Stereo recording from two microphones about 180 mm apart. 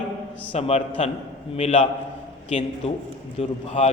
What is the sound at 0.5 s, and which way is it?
A man's voice, 35° left (ahead or behind).